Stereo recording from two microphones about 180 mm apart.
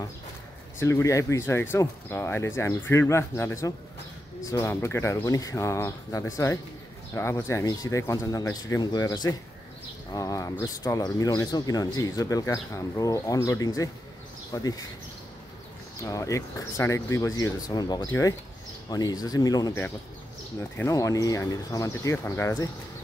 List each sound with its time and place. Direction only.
0.7 s speech: 15° left (ahead or behind)
16.0 s speech: 15° left (ahead or behind)